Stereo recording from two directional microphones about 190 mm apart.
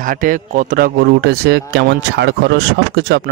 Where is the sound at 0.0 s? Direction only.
45° right (ahead or behind).